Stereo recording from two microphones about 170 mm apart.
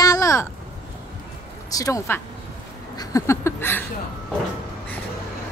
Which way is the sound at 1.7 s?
20° left (ahead or behind).